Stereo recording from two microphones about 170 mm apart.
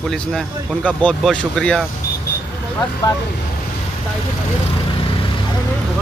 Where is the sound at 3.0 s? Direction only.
25° left (ahead or behind).